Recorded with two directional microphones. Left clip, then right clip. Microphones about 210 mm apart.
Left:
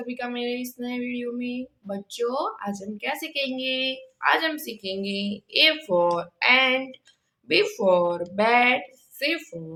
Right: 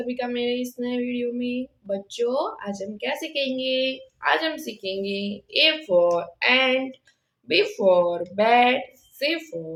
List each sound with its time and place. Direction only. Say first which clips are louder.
0.1 s female singing: right 3 dB; 15° left (ahead or behind)
7.4 s speech: right 2 dB; 20° left (ahead or behind)